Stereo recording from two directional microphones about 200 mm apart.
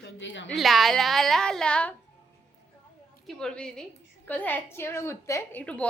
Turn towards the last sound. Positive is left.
turn(degrees=5)  # may be behind; listen again after turning